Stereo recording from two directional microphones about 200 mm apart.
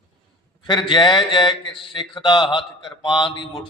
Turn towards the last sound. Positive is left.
turn(degrees=20)  # may be behind; listen again after turning